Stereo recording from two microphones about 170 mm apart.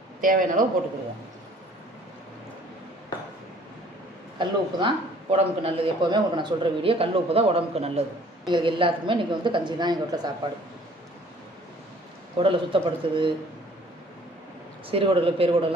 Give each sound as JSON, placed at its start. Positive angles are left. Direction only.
{"t": 0.2, "sound": "a man's voice", "side_deg": -55}
{"t": 4.4, "sound": "a woman's voice", "side_deg": -30}
{"t": 12.4, "sound": "a man's voice", "side_deg": -30}
{"t": 14.9, "sound": "a man's voice", "side_deg": -35}